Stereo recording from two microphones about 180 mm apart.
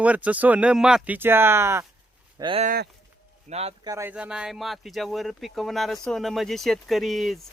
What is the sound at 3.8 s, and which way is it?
Speech, 15° right (ahead or behind).